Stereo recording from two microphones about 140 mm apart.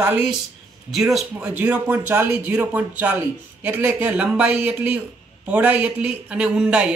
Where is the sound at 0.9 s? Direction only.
Centre (ahead or behind).